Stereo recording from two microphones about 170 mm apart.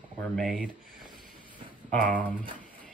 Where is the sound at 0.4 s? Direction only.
Centre (ahead or behind).